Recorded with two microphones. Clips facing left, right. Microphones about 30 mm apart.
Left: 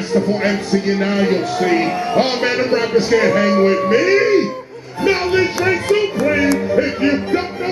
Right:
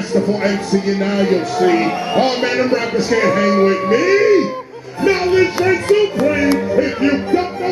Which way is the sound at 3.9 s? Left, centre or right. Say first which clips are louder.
Right 3 dB; centre.